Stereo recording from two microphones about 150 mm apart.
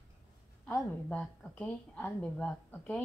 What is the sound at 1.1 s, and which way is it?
A woman's voice, 5° left (ahead or behind).